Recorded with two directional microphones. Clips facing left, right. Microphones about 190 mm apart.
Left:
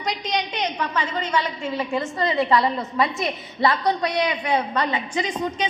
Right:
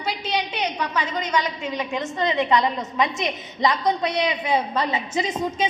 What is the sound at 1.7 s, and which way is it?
Speech, 15° right (ahead or behind).